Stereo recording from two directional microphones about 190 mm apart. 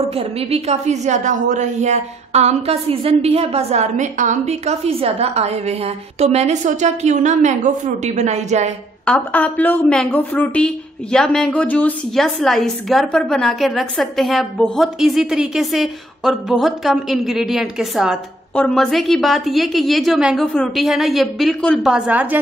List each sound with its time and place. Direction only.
0.1 s a woman's voice: 30° right (ahead or behind)
9.0 s a woman's voice: 5° left (ahead or behind)